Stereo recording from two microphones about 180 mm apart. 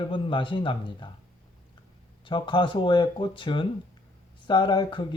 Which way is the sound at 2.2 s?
25° left (ahead or behind).